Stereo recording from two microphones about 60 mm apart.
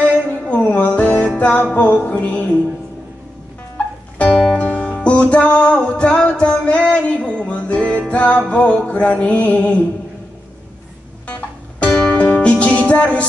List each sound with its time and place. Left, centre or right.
0.5 s music: left
3.7 s music: left
11.9 s music: centre